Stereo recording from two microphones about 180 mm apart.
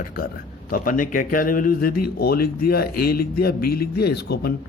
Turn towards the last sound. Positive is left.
turn(degrees=60)  # may be behind; listen again after turning